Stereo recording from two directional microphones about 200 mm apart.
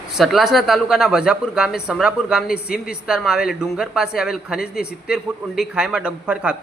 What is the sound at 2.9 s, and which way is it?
A man's voice, 5° right (ahead or behind).